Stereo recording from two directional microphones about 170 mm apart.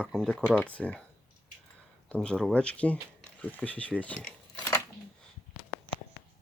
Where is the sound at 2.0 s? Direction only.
5° left (ahead or behind).